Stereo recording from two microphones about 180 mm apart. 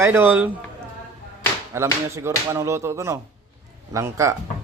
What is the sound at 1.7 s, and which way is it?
Speech, 15° right (ahead or behind).